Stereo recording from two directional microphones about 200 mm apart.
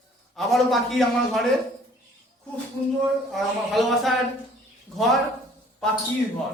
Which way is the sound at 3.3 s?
Centre (ahead or behind).